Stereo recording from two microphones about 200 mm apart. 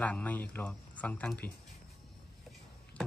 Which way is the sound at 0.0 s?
5° left (ahead or behind).